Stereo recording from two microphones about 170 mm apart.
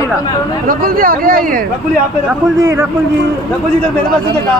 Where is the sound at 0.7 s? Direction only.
60° right (ahead or behind).